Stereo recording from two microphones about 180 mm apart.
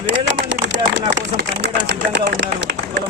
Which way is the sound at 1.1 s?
70° right (ahead or behind).